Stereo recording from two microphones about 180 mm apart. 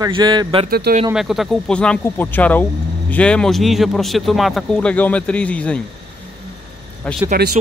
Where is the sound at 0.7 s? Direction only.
60° right (ahead or behind).